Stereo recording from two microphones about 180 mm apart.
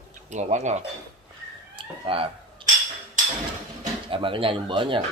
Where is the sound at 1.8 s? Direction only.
30° right (ahead or behind).